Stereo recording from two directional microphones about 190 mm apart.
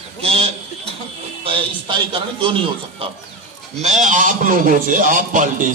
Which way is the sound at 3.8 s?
40° right (ahead or behind).